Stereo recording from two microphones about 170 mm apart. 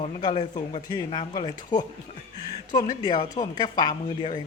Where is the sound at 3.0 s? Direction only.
30° left (ahead or behind).